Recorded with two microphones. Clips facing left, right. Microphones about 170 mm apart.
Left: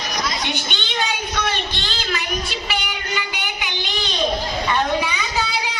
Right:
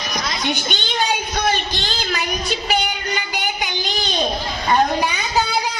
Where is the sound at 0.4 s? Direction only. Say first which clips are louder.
Right 3 dB; 40° right (ahead or behind).